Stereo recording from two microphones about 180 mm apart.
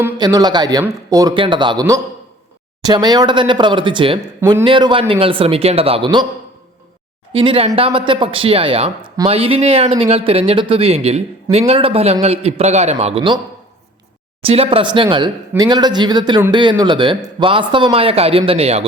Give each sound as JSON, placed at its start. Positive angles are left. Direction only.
{"t": 0.2, "sound": "speech", "side_deg": -20}
{"t": 4.4, "sound": "speech", "side_deg": -15}
{"t": 4.6, "sound": "speech", "side_deg": -30}
{"t": 7.3, "sound": "speech", "side_deg": -30}
{"t": 14.4, "sound": "speech", "side_deg": -30}